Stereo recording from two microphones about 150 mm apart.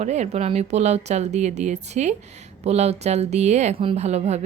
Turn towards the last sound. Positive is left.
turn(degrees=-45)  # may be behind; listen again after turning